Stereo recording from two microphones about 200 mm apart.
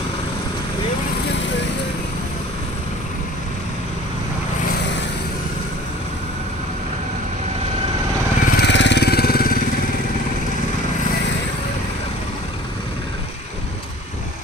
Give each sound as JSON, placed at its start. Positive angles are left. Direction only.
{"t": 8.5, "sound": "vehicle", "side_deg": 55}